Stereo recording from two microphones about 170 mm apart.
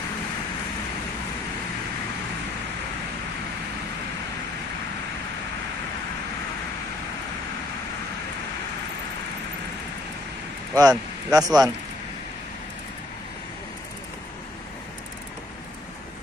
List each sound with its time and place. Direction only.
10.7 s speech: 20° right (ahead or behind)